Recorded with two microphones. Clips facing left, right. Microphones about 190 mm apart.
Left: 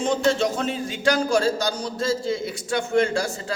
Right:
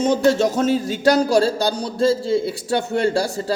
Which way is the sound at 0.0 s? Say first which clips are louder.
Right 5 dB; 40° right (ahead or behind).